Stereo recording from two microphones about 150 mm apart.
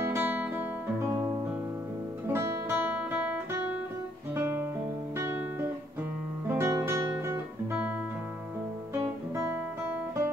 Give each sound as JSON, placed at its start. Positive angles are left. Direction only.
{"t": 0.0, "sound": "guitar", "side_deg": -15}
{"t": 2.2, "sound": "guitar", "side_deg": -15}
{"t": 8.9, "sound": "guitar", "side_deg": -15}